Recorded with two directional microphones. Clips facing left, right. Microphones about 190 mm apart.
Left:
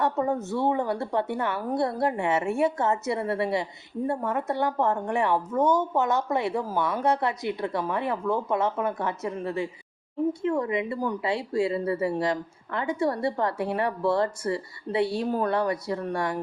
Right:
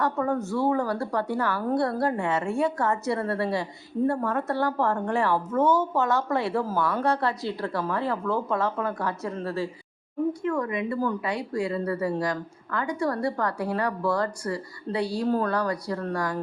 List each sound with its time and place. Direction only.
0.0 s speech: 20° left (ahead or behind)